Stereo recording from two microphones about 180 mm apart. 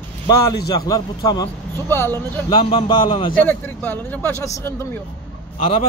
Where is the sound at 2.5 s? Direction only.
25° left (ahead or behind).